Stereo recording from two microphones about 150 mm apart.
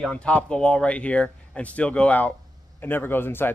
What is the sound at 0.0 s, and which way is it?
Speech, 5° left (ahead or behind).